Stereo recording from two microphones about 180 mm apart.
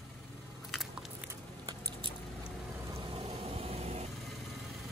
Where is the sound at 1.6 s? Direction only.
20° right (ahead or behind).